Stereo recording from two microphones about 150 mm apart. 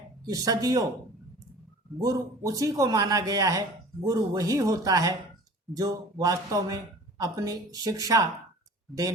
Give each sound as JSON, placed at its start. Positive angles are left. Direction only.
{"t": 0.3, "sound": "speech", "side_deg": -25}
{"t": 2.0, "sound": "speech", "side_deg": -25}